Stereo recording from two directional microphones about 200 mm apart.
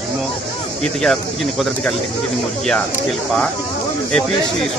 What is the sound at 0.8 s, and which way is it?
Speech, centre (ahead or behind).